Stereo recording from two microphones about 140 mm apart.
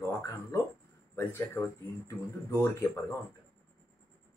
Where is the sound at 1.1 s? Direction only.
15° left (ahead or behind).